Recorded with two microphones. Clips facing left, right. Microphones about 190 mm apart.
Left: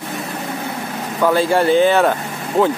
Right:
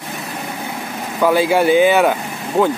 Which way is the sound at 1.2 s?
5° right (ahead or behind).